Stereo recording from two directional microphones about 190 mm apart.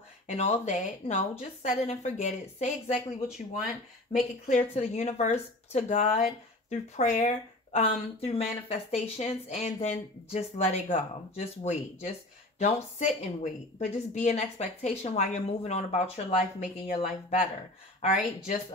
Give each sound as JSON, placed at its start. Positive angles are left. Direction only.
{"t": 0.3, "sound": "a woman's voice", "side_deg": 35}
{"t": 4.5, "sound": "a woman's voice", "side_deg": 35}